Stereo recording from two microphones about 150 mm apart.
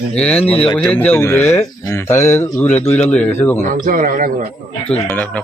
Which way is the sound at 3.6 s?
65° right (ahead or behind).